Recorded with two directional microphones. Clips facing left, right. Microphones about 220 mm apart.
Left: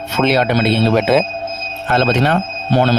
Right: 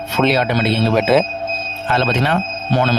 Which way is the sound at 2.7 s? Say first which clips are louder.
Left 3 dB; 35° left (ahead or behind).